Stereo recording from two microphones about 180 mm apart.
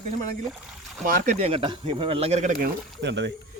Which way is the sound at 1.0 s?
50° right (ahead or behind).